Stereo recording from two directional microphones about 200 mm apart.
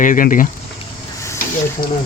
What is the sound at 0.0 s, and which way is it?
Speech, 40° left (ahead or behind).